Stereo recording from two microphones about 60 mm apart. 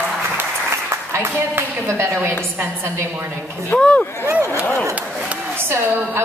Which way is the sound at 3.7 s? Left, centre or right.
Centre.